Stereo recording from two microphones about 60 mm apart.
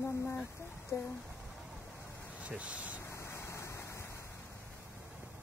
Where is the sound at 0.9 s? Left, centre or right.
Left.